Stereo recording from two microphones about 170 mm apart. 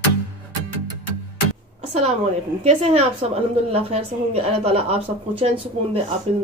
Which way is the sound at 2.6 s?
40° right (ahead or behind).